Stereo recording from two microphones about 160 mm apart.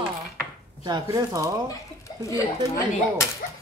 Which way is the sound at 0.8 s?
25° right (ahead or behind).